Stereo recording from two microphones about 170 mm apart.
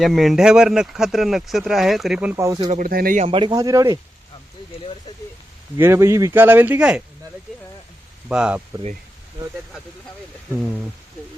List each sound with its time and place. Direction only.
0.0 s speech: centre (ahead or behind)
2.3 s speech: 20° right (ahead or behind)
2.6 s speech: 55° right (ahead or behind)
3.2 s a man's voice: 30° right (ahead or behind)
3.5 s speech: 20° right (ahead or behind)
5.7 s speech: 15° right (ahead or behind)
8.3 s speech: 5° right (ahead or behind)